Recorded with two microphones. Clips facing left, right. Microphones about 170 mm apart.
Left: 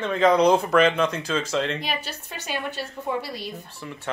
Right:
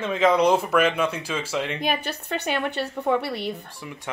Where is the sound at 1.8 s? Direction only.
55° right (ahead or behind).